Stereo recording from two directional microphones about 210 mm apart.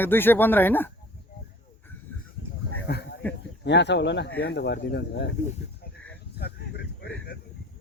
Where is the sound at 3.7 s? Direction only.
55° left (ahead or behind).